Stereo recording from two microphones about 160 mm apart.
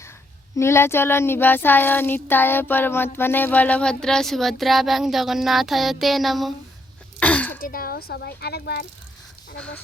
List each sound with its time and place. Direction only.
0.5 s child singing: 15° left (ahead or behind); by 6.5 s centre (ahead or behind)
7.2 s a sound: 10° left (ahead or behind)
7.6 s speech: 65° left (ahead or behind); by 8.9 s 90° left
9.6 s child singing: 10° left (ahead or behind)